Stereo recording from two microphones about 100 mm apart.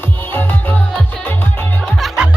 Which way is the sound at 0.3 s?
20° left (ahead or behind).